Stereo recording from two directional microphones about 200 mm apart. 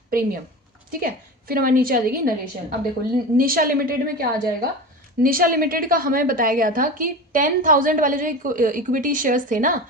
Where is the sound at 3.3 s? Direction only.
45° right (ahead or behind).